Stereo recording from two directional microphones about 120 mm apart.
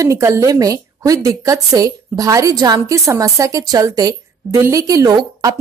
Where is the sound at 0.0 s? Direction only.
25° right (ahead or behind).